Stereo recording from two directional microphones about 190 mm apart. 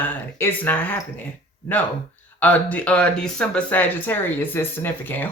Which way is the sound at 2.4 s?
10° left (ahead or behind).